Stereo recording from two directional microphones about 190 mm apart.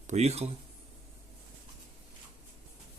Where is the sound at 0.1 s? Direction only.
35° right (ahead or behind).